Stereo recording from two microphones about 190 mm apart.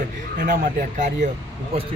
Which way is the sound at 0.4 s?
40° right (ahead or behind).